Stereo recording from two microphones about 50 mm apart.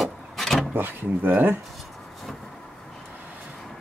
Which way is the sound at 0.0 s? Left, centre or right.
Centre.